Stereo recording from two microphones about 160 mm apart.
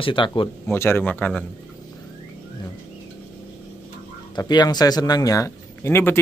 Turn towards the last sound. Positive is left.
turn(degrees=15)  # may be behind; listen again after turning